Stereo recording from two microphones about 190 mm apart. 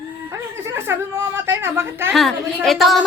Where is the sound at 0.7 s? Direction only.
10° right (ahead or behind).